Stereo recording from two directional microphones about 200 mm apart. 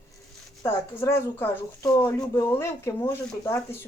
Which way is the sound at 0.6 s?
15° left (ahead or behind).